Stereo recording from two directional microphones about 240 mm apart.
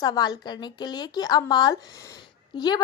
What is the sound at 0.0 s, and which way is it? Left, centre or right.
A woman's voice, centre.